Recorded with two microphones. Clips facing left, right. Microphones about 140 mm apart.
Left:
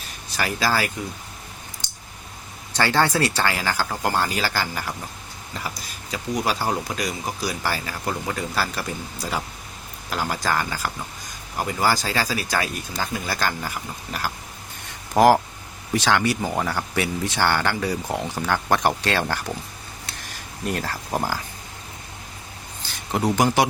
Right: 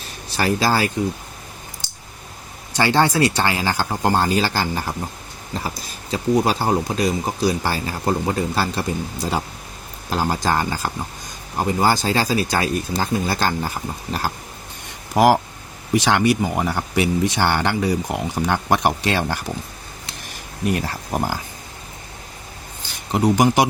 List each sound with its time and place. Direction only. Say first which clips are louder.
0.3 s speech: right 4 dB; 35° right (ahead or behind)
2.7 s speech: right 3 dB; 15° right (ahead or behind)
15.1 s speech: even; 10° right (ahead or behind)
20.7 s speech: right 4 dB; 15° right (ahead or behind)
23.1 s speech: right 3 dB; 15° right (ahead or behind)